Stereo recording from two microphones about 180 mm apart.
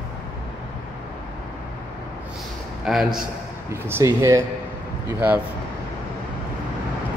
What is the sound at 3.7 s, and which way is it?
Speech, 15° right (ahead or behind).